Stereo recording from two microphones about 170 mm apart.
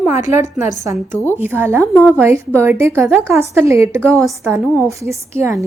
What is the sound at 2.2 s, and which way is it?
A woman's voice, 15° right (ahead or behind).